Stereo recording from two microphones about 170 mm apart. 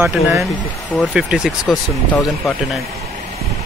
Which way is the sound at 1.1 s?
5° right (ahead or behind).